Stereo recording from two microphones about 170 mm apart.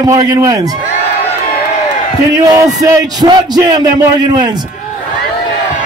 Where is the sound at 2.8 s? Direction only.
20° right (ahead or behind).